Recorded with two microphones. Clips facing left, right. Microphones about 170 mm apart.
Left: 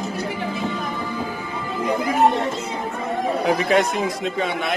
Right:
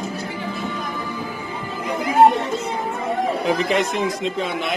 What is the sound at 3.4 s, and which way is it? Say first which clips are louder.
Speech: left 5 dB; centre (ahead or behind).